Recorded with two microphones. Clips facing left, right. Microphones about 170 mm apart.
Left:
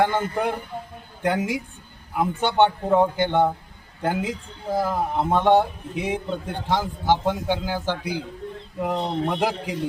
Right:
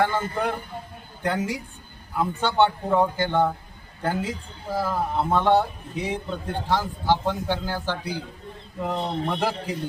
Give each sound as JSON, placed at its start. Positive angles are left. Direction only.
{"t": 0.0, "sound": "a man's voice", "side_deg": 20}